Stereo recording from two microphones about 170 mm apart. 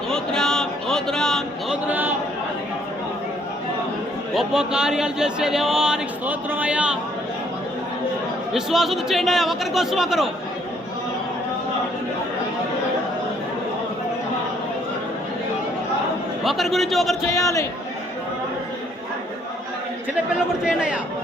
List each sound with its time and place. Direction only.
0.1 s a sound: 5° left (ahead or behind)
1.9 s a sound: 10° right (ahead or behind)
4.4 s speech: 5° right (ahead or behind)
8.5 s speech: centre (ahead or behind)
16.4 s speech: centre (ahead or behind)
17.3 s a man's voice: 20° left (ahead or behind)
20.1 s speech: 5° right (ahead or behind)